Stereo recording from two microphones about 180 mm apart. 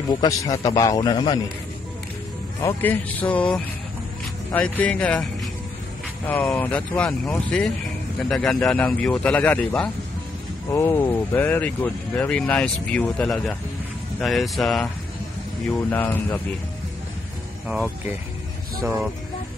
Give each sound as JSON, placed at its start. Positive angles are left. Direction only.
{"t": 0.1, "sound": "speech", "side_deg": 20}
{"t": 2.6, "sound": "speech", "side_deg": 10}
{"t": 17.6, "sound": "speech", "side_deg": -5}